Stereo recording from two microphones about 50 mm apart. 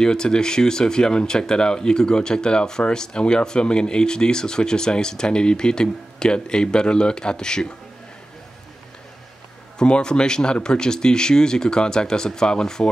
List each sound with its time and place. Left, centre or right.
0.0 s speech: centre
9.8 s speech: centre